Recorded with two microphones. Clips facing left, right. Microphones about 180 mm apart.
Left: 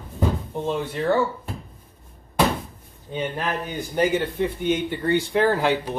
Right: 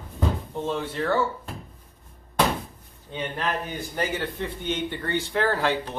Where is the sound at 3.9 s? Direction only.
15° left (ahead or behind).